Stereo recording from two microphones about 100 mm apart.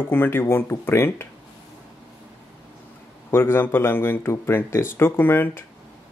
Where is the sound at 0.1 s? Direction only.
20° left (ahead or behind).